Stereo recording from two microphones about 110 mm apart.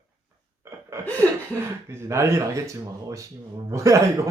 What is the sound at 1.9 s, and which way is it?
Speech, 25° right (ahead or behind).